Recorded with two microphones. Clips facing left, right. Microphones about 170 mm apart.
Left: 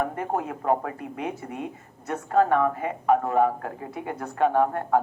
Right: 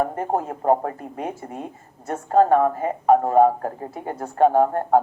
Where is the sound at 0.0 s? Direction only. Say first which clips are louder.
Right 4 dB; 35° right (ahead or behind).